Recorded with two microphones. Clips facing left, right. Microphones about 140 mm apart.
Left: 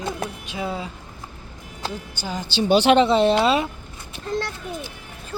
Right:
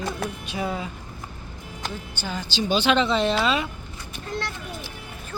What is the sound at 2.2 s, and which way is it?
Speech, 15° left (ahead or behind).